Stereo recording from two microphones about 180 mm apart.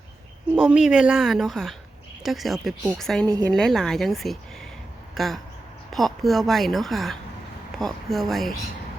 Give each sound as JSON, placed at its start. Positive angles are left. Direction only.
{"t": 0.5, "sound": "a woman's voice", "side_deg": -5}